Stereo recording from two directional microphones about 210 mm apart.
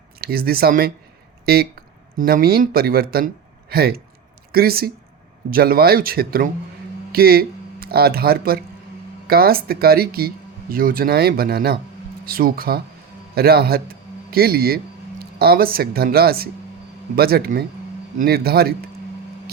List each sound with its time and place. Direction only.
0.2 s a man's voice: 45° right (ahead or behind)